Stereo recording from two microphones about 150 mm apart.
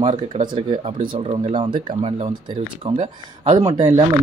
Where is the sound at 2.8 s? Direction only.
35° right (ahead or behind).